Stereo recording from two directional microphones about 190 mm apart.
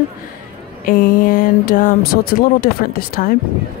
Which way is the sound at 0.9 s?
50° left (ahead or behind).